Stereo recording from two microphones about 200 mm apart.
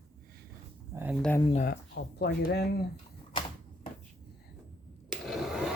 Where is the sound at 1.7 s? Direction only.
55° left (ahead or behind).